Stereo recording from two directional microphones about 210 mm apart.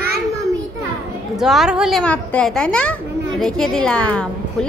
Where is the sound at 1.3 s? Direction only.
Centre (ahead or behind).